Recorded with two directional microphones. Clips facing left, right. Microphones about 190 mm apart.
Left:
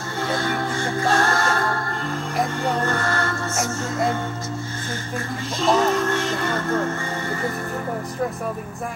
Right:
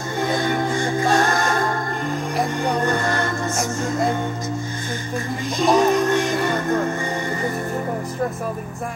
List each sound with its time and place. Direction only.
0.2 s music: 15° right (ahead or behind)
5.6 s music: 15° right (ahead or behind)